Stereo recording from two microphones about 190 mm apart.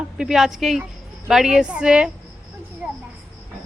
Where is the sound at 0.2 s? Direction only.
Centre (ahead or behind).